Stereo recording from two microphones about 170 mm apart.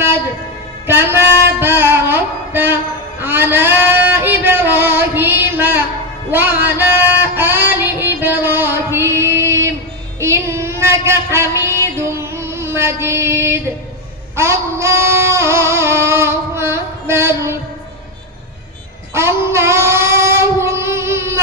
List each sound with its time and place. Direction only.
0.8 s a sound: 15° right (ahead or behind)
6.8 s music: 10° right (ahead or behind)
10.2 s child singing: 15° right (ahead or behind)
14.3 s singing: 15° right (ahead or behind)
19.1 s child singing: 15° right (ahead or behind)